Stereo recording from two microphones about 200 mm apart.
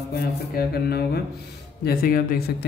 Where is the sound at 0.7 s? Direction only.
50° left (ahead or behind).